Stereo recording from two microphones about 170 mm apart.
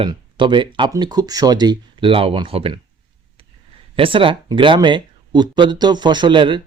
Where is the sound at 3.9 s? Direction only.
30° right (ahead or behind).